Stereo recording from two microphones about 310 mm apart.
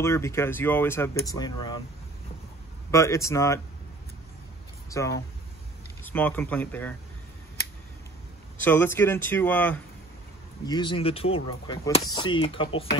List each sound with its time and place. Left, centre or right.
0.0 s speech: centre
2.9 s speech: centre
4.8 s speech: centre
8.6 s speech: centre